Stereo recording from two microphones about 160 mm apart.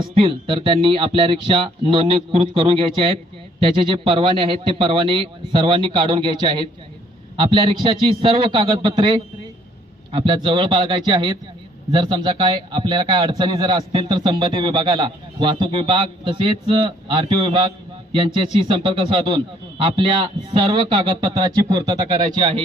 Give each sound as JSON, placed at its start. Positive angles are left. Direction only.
{"t": 0.0, "sound": "a man's voice", "side_deg": -35}